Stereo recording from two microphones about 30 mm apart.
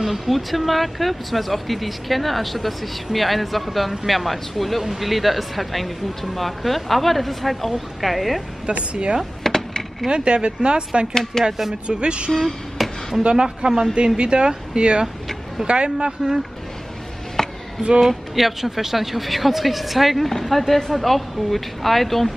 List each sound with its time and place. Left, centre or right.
0.0 s speech: centre
8.9 s a woman's voice: right
9.4 s mechanisms: centre
10.0 s speech: right
11.3 s speech: centre
11.9 s speech: right
12.3 s speech: centre
13.2 s a woman's voice: right
17.4 s a sound: centre
18.3 s speech: centre
20.2 s speech: centre